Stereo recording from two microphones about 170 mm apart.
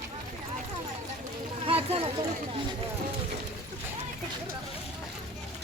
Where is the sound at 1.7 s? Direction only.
35° right (ahead or behind).